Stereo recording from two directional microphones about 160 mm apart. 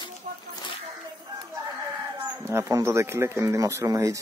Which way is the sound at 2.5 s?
20° right (ahead or behind).